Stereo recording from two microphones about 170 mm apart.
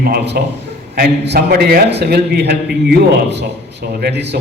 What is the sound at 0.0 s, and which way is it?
A man's voice, 65° right (ahead or behind).